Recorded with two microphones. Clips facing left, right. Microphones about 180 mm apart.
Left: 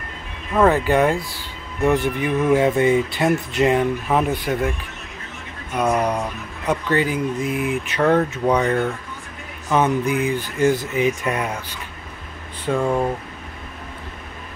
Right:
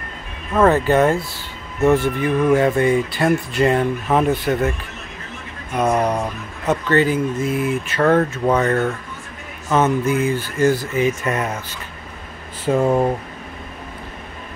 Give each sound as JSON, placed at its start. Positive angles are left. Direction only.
{"t": 0.7, "sound": "speech", "side_deg": 15}
{"t": 5.8, "sound": "speech", "side_deg": -10}
{"t": 6.7, "sound": "speech", "side_deg": 10}
{"t": 11.0, "sound": "speech", "side_deg": 5}
{"t": 12.7, "sound": "speech", "side_deg": -25}